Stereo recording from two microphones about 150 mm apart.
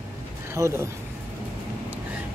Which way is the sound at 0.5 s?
20° right (ahead or behind).